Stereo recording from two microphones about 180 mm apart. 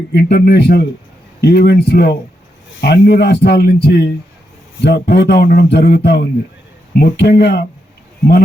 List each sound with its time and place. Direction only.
0.1 s a man's voice: 65° left (ahead or behind)